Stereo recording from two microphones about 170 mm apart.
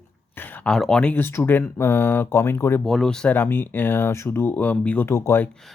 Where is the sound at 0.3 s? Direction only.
10° left (ahead or behind).